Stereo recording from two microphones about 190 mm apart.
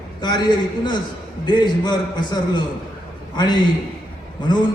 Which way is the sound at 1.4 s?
25° left (ahead or behind).